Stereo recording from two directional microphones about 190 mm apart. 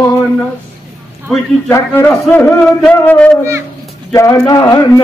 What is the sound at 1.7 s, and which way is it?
A man's voice, 10° left (ahead or behind).